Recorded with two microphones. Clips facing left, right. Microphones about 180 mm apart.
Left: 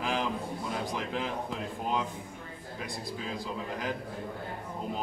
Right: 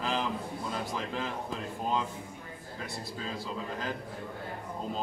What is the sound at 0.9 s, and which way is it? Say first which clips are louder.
Speech: left 1 dB; 15° left (ahead or behind).